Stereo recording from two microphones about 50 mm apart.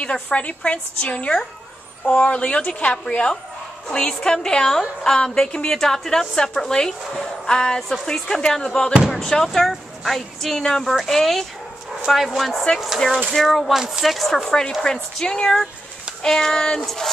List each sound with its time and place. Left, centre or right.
0.0 s a woman's voice: left; by 10.6 s centre
10.6 s a woman's voice: centre
13.7 s a woman's voice: centre